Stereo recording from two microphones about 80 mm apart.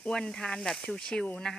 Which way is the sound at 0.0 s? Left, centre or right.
Centre.